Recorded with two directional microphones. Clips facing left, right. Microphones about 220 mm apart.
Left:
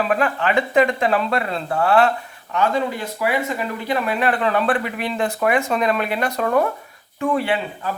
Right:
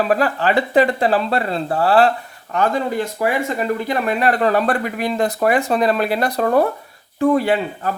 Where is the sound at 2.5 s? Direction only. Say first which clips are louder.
Right 2 dB; 45° right (ahead or behind).